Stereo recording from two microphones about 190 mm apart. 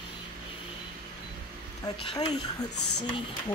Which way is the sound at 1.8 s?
25° left (ahead or behind).